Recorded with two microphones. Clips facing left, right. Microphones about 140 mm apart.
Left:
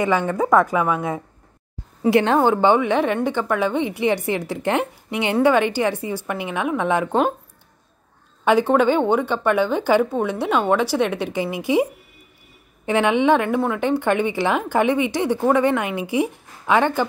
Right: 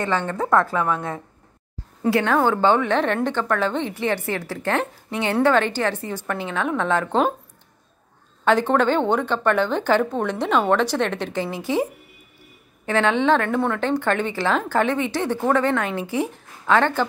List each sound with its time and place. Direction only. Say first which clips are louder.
0.0 s a woman's voice: left 4 dB; 10° left (ahead or behind)
2.0 s a woman's voice: left 3 dB; 20° left (ahead or behind)
8.5 s a woman's voice: left 2 dB; 10° left (ahead or behind)